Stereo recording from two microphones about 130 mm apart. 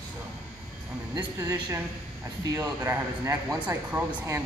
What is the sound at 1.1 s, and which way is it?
Speech, 25° right (ahead or behind).